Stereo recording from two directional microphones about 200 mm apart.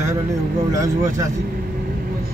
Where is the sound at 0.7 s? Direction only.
15° right (ahead or behind).